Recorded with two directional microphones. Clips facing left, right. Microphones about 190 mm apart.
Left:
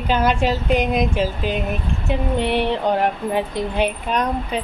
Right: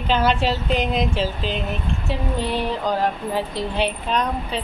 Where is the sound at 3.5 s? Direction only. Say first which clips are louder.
Left 2 dB; 50° left (ahead or behind).